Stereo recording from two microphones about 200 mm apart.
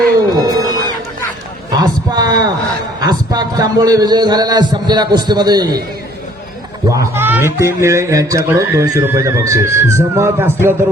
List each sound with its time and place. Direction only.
0.3 s music: 20° right (ahead or behind)
1.7 s a sound: 20° right (ahead or behind)
3.0 s a man's voice: 20° right (ahead or behind)
6.8 s speech: 15° right (ahead or behind)